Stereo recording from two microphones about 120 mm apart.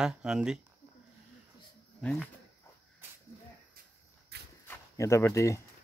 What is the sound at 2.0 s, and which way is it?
Speech, 5° left (ahead or behind).